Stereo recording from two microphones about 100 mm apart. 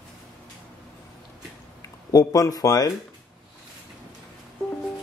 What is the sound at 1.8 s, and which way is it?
Speech, 35° left (ahead or behind).